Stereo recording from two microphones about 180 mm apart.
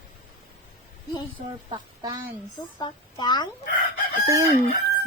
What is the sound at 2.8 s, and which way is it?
Speech, 25° left (ahead or behind).